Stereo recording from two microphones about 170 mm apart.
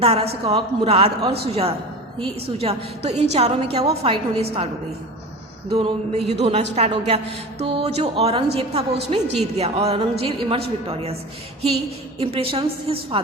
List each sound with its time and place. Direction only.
0.0 s a woman's voice: 35° right (ahead or behind)
5.7 s a woman's voice: 35° right (ahead or behind)
12.2 s a woman's voice: 35° right (ahead or behind)